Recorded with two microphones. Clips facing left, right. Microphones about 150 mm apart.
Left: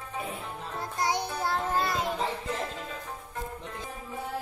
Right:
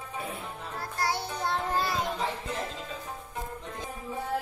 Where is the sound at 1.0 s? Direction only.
20° left (ahead or behind).